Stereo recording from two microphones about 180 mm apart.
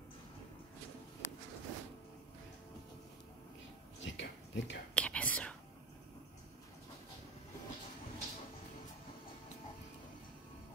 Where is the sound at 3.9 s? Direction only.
90° left.